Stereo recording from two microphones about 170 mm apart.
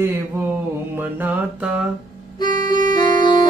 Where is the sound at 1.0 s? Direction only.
10° right (ahead or behind).